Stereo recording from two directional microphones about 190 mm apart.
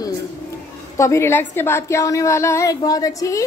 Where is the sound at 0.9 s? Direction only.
15° left (ahead or behind).